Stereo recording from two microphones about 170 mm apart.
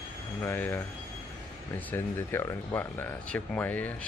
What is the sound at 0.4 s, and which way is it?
Speech, 10° left (ahead or behind).